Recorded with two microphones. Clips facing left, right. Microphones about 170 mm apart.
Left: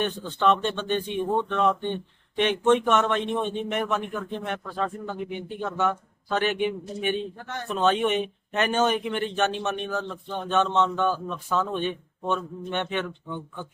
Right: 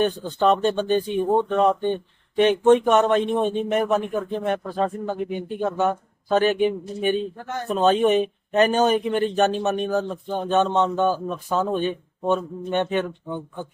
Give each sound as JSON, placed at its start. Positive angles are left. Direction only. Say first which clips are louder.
{"t": 0.0, "sound": "speech", "louder": "right 4 dB", "side_deg": -40}